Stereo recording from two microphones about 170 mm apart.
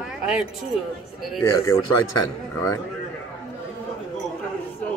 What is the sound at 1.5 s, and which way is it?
Speech, 20° left (ahead or behind).